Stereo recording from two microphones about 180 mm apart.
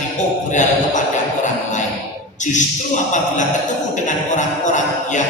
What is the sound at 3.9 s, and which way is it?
Speech, 45° left (ahead or behind).